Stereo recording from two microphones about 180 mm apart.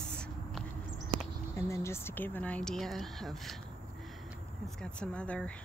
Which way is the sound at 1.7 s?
15° left (ahead or behind).